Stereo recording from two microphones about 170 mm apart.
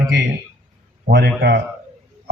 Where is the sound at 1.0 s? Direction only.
70° right (ahead or behind).